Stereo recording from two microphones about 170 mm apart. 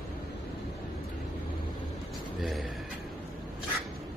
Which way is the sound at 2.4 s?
Centre (ahead or behind).